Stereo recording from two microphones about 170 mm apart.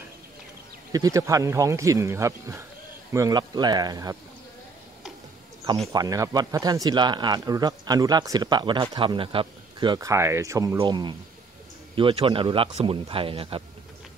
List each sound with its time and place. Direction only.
0.9 s speech: 20° right (ahead or behind)
5.9 s speech: 20° right (ahead or behind)